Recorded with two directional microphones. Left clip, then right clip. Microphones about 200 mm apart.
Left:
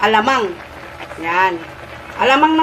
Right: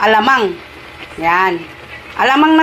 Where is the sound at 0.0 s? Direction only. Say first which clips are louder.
Right 3 dB; 15° right (ahead or behind).